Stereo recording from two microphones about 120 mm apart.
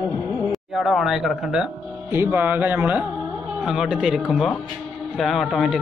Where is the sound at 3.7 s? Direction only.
5° right (ahead or behind).